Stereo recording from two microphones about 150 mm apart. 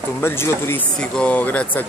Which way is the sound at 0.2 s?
15° left (ahead or behind).